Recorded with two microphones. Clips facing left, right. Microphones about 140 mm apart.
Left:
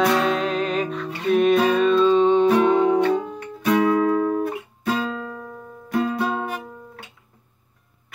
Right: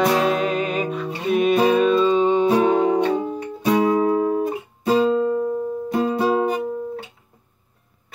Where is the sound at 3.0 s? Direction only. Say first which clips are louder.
Even; 20° right (ahead or behind).